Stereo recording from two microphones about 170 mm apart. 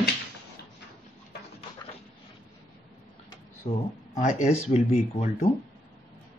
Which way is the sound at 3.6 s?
35° left (ahead or behind).